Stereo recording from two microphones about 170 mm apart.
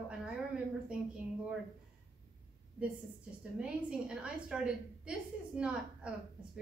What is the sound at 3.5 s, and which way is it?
A woman's voice, 5° right (ahead or behind).